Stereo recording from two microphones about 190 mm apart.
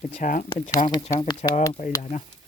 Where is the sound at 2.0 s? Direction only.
40° left (ahead or behind).